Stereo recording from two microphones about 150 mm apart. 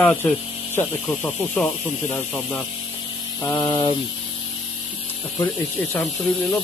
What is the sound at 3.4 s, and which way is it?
Speech, 25° left (ahead or behind).